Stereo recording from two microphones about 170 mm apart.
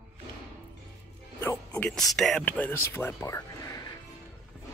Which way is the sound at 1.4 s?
10° left (ahead or behind).